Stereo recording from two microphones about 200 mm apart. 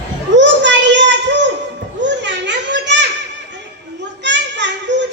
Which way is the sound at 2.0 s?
60° right (ahead or behind).